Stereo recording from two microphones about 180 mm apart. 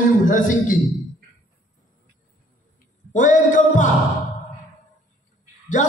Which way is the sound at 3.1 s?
45° left (ahead or behind).